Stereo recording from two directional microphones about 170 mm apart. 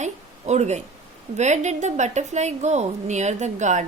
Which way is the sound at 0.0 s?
40° right (ahead or behind).